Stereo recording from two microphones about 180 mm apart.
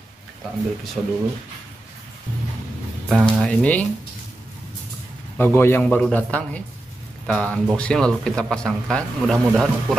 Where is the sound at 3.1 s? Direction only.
Centre (ahead or behind).